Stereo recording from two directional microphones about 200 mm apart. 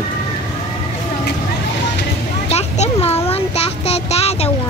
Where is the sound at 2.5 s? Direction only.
35° left (ahead or behind).